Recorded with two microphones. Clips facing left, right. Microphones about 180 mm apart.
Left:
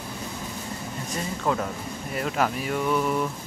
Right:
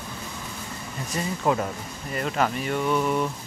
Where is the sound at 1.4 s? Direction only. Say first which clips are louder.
Right 2 dB; 10° right (ahead or behind).